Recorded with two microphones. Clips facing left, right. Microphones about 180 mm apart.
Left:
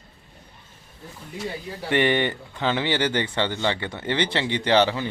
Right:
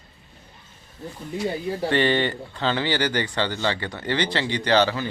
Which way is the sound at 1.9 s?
15° left (ahead or behind).